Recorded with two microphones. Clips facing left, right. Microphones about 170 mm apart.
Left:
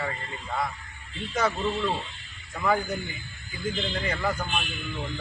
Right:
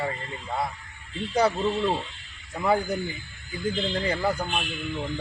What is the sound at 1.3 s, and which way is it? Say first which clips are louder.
A man's voice: right 4 dB; 30° right (ahead or behind).